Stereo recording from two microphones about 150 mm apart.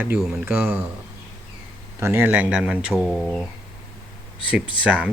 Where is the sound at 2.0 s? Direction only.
15° right (ahead or behind).